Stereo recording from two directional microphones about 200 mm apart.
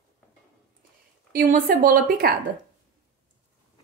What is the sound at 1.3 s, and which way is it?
A woman's voice, 45° right (ahead or behind).